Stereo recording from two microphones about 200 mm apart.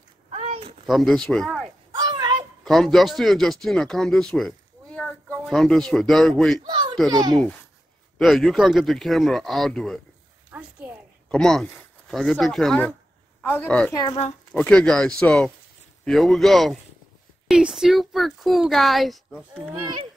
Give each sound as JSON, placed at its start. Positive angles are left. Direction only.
{"t": 0.3, "sound": "a sound", "side_deg": -30}
{"t": 0.8, "sound": "speech", "side_deg": 0}
{"t": 1.9, "sound": "a sound", "side_deg": -20}
{"t": 2.6, "sound": "speech", "side_deg": 0}
{"t": 6.6, "sound": "baby laughter", "side_deg": -25}
{"t": 7.1, "sound": "speech", "side_deg": -20}
{"t": 8.2, "sound": "speech", "side_deg": 0}
{"t": 10.5, "sound": "a sound", "side_deg": -5}
{"t": 11.2, "sound": "a woman's voice", "side_deg": 5}
{"t": 19.5, "sound": "speech", "side_deg": -25}